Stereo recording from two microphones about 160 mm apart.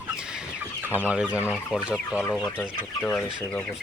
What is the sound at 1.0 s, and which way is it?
Speech, 10° right (ahead or behind).